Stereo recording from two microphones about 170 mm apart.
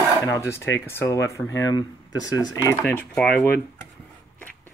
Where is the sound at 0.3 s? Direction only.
15° left (ahead or behind).